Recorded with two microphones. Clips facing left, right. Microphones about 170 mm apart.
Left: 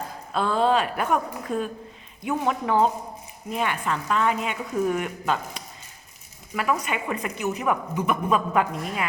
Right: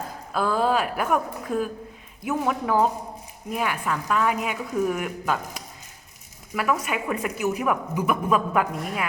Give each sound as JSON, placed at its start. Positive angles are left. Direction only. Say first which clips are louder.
{"t": 0.3, "sound": "a woman's voice", "louder": "left 1 dB", "side_deg": -5}